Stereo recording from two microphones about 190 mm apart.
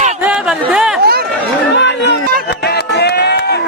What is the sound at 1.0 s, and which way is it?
Chatter, 55° right (ahead or behind).